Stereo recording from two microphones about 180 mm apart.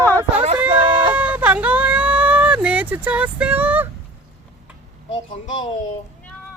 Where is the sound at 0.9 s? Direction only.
25° right (ahead or behind).